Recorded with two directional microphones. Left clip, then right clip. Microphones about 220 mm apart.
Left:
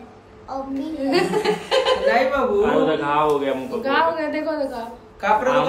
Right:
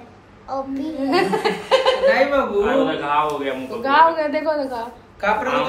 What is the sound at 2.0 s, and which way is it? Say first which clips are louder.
Speech: right 2 dB; 10° left (ahead or behind).